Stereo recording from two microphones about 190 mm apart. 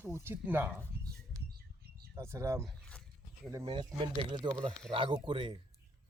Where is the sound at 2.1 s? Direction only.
15° right (ahead or behind).